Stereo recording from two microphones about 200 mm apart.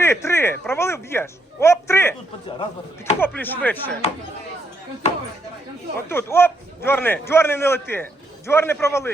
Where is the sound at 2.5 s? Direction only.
25° left (ahead or behind).